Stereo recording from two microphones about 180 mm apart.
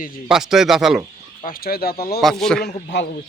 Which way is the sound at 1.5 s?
55° left (ahead or behind).